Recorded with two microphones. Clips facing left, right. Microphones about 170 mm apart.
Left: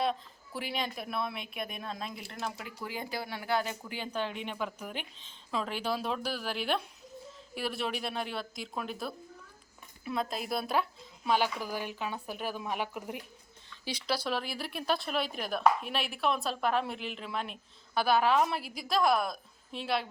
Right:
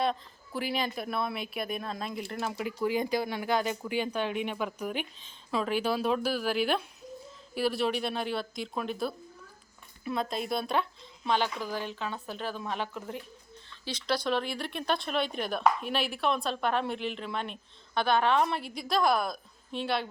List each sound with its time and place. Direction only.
0.0 s a woman's voice: centre (ahead or behind)
2.6 s speech: 15° right (ahead or behind)
5.8 s speech: 60° right (ahead or behind)
6.1 s a woman's voice: 5° right (ahead or behind)